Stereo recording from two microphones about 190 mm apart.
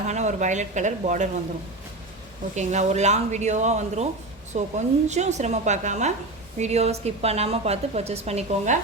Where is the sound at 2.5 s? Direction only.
35° right (ahead or behind).